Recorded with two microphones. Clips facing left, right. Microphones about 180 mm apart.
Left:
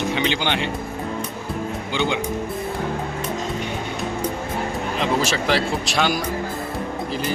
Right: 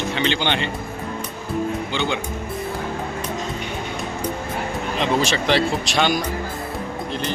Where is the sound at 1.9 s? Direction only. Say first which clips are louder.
Left 3 dB; 15° left (ahead or behind).